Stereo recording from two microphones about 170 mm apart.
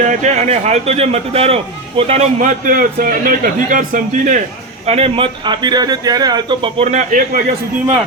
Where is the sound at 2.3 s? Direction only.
50° right (ahead or behind).